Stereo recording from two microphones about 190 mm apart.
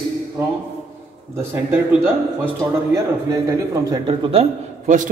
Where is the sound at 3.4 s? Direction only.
15° right (ahead or behind); by 5.1 s 40° right (ahead or behind).